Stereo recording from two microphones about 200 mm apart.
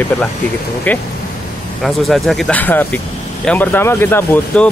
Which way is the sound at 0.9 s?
5° left (ahead or behind).